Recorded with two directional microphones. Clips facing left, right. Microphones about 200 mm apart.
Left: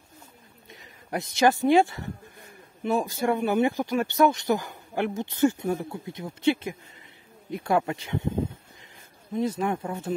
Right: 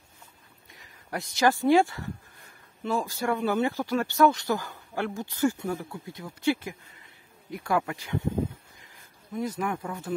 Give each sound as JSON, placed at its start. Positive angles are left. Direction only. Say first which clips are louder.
{"t": 0.7, "sound": "speech", "louder": "left 3 dB", "side_deg": 20}
{"t": 9.3, "sound": "speech", "louder": "left 4 dB", "side_deg": 25}